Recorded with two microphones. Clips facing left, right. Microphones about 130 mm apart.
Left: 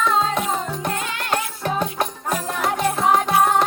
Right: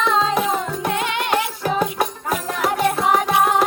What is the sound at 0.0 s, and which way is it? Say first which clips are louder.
Music: right 2 dB; 5° right (ahead or behind).